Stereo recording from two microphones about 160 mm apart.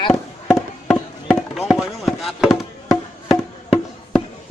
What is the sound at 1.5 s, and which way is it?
Speech, centre (ahead or behind).